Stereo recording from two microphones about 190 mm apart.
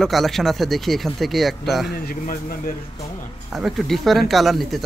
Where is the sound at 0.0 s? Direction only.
Centre (ahead or behind).